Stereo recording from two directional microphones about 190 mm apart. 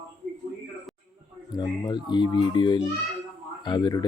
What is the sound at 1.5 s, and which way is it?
Speech, 20° left (ahead or behind).